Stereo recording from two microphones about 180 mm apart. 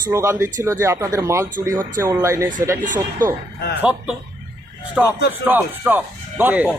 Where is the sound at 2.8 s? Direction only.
45° right (ahead or behind).